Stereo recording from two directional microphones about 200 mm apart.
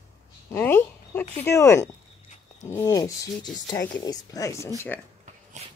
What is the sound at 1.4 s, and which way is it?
Speech, 15° left (ahead or behind).